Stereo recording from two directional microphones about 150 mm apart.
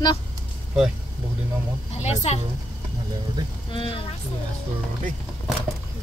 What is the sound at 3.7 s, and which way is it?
Speech, 35° left (ahead or behind).